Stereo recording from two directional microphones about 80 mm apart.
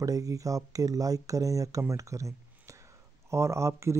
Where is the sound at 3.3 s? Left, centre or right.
Right.